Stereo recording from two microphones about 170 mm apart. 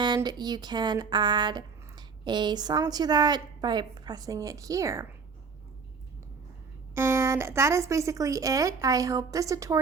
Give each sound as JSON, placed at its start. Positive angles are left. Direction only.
{"t": 0.0, "sound": "speech", "side_deg": -25}
{"t": 6.9, "sound": "speech", "side_deg": -15}